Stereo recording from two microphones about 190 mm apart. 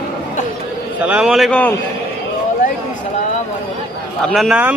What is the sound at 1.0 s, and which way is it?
Speech, 5° right (ahead or behind).